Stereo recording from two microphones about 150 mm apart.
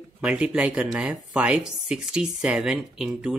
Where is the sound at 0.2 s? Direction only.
10° right (ahead or behind).